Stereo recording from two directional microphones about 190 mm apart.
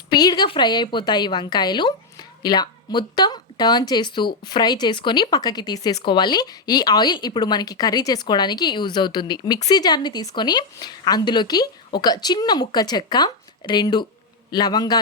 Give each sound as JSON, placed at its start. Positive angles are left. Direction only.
{"t": 0.1, "sound": "speech", "side_deg": 20}